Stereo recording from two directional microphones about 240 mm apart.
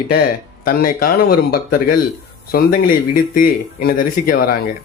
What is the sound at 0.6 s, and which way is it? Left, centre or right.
Speech, left.